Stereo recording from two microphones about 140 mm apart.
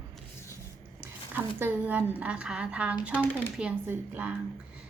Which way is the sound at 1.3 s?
15° right (ahead or behind).